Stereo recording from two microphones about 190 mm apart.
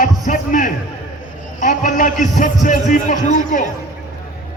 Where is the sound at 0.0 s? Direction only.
45° left (ahead or behind).